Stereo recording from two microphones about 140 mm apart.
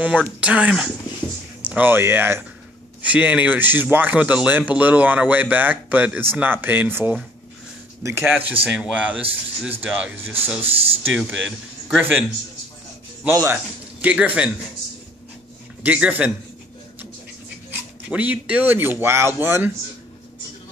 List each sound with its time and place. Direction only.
0.0 s speech: 10° right (ahead or behind)
15.8 s speech: 10° right (ahead or behind)
17.6 s speech: 10° right (ahead or behind)